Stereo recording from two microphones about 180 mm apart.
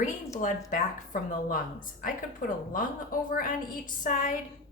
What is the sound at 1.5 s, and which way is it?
A woman's voice, 50° left (ahead or behind).